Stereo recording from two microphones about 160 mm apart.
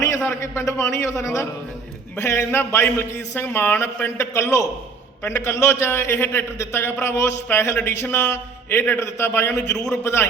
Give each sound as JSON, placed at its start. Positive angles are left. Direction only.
{"t": 0.3, "sound": "a man's voice", "side_deg": 15}